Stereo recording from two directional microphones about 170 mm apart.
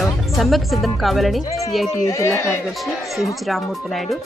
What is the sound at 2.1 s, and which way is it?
Speech, 15° left (ahead or behind).